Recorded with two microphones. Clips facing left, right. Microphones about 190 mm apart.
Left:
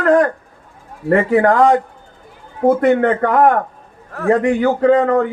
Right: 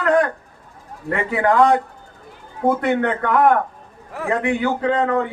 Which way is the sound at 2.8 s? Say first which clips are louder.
Left 6 dB; 45° left (ahead or behind).